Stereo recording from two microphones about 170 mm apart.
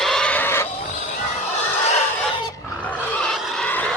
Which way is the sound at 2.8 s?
5° left (ahead or behind).